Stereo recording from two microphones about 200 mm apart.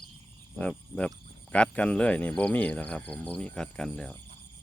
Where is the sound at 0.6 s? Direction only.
5° left (ahead or behind).